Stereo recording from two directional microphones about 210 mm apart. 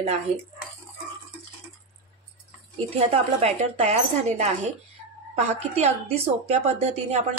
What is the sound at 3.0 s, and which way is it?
Speech, 30° right (ahead or behind).